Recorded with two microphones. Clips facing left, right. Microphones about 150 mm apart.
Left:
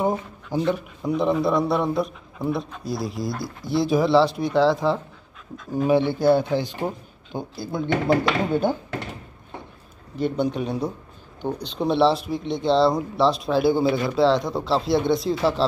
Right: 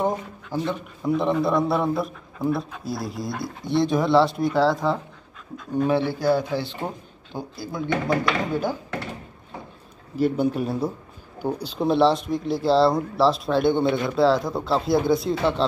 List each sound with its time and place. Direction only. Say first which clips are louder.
0.0 s speech: left 1 dB; 10° left (ahead or behind)
1.0 s speech: even; centre (ahead or behind)
7.3 s speech: left 2 dB; 25° left (ahead or behind)
10.1 s speech: right 2 dB; 5° right (ahead or behind)